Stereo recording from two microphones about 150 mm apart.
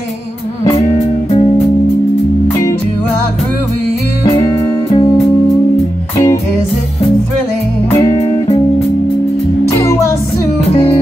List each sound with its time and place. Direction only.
0.7 s music: 45° left (ahead or behind)
4.2 s music: 25° left (ahead or behind)
4.8 s music: 40° left (ahead or behind)
8.1 s music: 45° left (ahead or behind)
9.8 s music: 20° left (ahead or behind)